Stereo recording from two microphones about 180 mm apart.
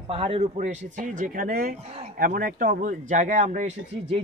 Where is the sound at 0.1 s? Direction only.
30° right (ahead or behind).